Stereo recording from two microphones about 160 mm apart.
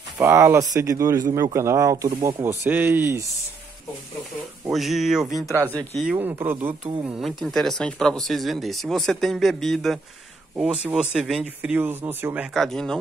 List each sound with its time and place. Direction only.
0.2 s speech: 15° right (ahead or behind)
4.7 s speech: centre (ahead or behind)
6.0 s speech: 15° right (ahead or behind)
12.5 s speech: 5° left (ahead or behind)